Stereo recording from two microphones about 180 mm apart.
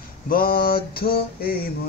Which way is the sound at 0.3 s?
55° left (ahead or behind).